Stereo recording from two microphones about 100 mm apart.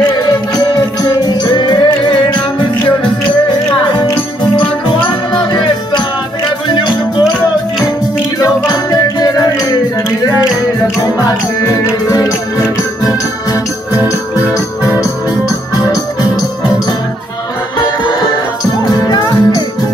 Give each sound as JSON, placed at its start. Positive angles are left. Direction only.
{"t": 1.0, "sound": "music", "side_deg": 40}
{"t": 5.5, "sound": "music", "side_deg": 50}
{"t": 8.4, "sound": "music", "side_deg": 40}
{"t": 11.0, "sound": "music", "side_deg": 35}
{"t": 15.8, "sound": "music", "side_deg": 40}
{"t": 18.9, "sound": "music", "side_deg": 40}